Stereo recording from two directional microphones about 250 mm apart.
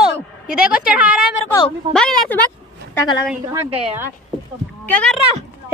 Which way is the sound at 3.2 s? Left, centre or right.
Centre.